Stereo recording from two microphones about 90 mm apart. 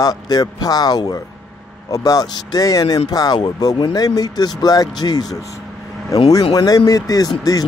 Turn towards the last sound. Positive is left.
turn(degrees=45)  # may be behind; listen again after turning